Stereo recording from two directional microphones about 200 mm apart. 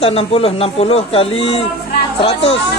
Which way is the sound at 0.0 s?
30° left (ahead or behind).